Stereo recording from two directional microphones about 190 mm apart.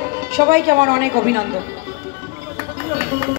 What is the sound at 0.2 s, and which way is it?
Speech, 50° right (ahead or behind).